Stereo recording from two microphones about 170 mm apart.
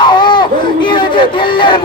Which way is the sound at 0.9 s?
30° left (ahead or behind).